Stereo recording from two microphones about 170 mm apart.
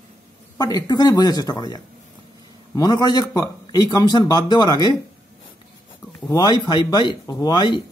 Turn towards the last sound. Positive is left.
turn(degrees=25)  # may be behind; listen again after turning